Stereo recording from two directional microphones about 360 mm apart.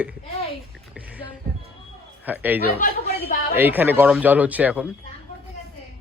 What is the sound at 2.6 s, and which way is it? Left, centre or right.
Speech, left.